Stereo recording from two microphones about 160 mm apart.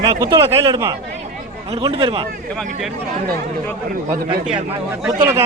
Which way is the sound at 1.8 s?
30° right (ahead or behind).